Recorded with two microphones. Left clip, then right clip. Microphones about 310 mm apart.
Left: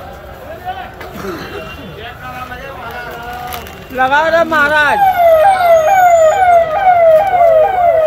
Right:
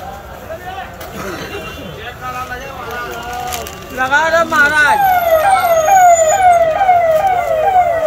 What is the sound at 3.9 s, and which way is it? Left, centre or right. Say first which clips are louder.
Speech: left 2 dB; left.